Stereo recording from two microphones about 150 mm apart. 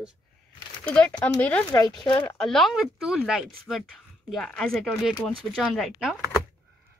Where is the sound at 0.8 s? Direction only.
10° left (ahead or behind).